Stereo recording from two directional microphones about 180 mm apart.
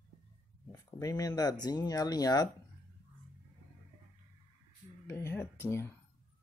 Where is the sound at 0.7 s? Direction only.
20° left (ahead or behind).